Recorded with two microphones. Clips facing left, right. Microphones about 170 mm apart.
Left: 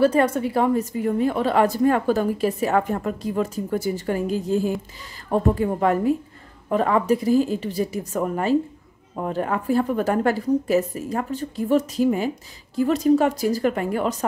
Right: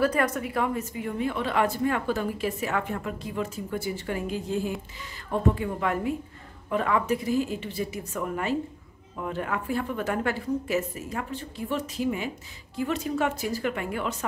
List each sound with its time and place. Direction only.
0.0 s a woman's voice: 30° left (ahead or behind)